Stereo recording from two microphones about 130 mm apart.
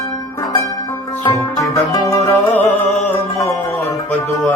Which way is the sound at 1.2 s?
25° left (ahead or behind).